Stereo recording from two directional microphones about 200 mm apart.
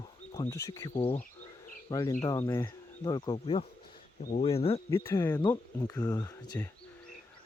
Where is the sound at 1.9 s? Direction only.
15° left (ahead or behind); by 4.8 s 30° left (ahead or behind).